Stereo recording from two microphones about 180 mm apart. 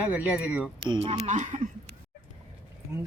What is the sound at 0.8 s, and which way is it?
Speech, 25° right (ahead or behind).